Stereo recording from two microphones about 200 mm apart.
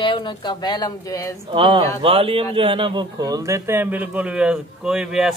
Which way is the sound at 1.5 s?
25° right (ahead or behind).